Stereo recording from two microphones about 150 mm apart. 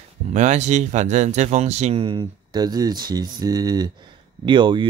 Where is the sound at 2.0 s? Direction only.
30° right (ahead or behind).